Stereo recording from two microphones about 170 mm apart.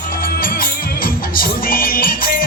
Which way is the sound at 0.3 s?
60° left (ahead or behind).